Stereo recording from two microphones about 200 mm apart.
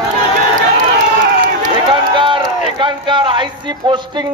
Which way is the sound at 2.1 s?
25° right (ahead or behind).